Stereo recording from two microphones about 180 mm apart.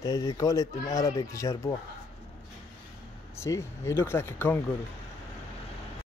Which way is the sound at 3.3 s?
15° left (ahead or behind).